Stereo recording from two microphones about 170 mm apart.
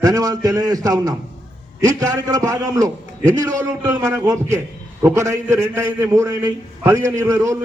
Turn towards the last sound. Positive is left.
turn(degrees=-20)  # may be behind; listen again after turning